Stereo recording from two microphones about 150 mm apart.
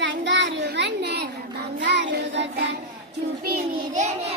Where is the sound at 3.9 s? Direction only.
55° right (ahead or behind).